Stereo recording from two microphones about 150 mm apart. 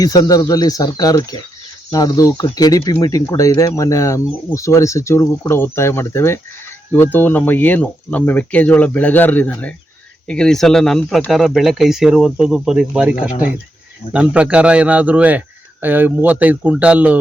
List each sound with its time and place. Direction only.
0.0 s speech: 25° left (ahead or behind); by 17.2 s 10° right (ahead or behind)